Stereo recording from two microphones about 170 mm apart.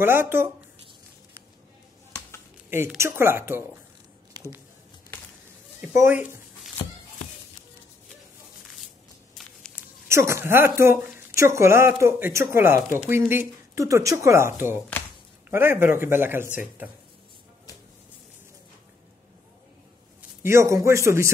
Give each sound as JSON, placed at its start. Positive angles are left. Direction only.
{"t": 0.0, "sound": "speech", "side_deg": -15}
{"t": 2.7, "sound": "speech", "side_deg": -15}
{"t": 5.8, "sound": "a woman's voice", "side_deg": -10}
{"t": 10.0, "sound": "speech", "side_deg": -15}
{"t": 20.2, "sound": "a man's voice", "side_deg": -15}